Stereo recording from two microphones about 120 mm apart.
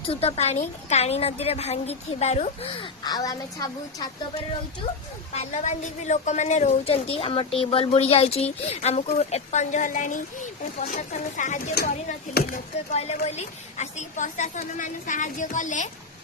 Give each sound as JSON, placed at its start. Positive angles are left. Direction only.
{"t": 0.1, "sound": "a woman's voice", "side_deg": 55}
{"t": 2.6, "sound": "speech", "side_deg": 40}
{"t": 5.3, "sound": "a woman's voice", "side_deg": 70}
{"t": 12.9, "sound": "a woman's voice", "side_deg": 60}